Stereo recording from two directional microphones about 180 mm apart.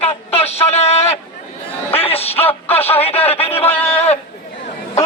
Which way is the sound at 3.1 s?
10° left (ahead or behind).